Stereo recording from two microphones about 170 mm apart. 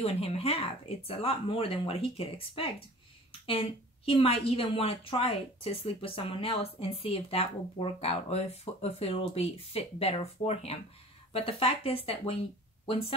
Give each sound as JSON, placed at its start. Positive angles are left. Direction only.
{"t": 0.0, "sound": "a woman's voice", "side_deg": 35}